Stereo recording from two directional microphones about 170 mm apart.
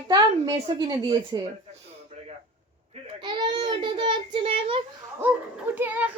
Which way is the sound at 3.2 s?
25° right (ahead or behind).